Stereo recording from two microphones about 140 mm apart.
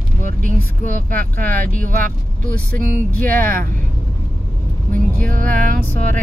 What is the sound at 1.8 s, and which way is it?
Music, 75° right (ahead or behind).